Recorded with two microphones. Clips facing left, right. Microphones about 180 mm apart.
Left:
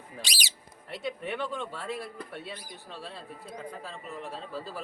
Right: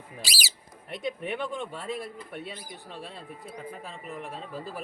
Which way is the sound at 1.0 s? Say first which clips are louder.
Right 2 dB; 15° right (ahead or behind).